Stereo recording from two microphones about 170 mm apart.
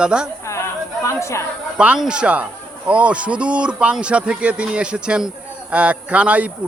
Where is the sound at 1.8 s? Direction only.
5° right (ahead or behind).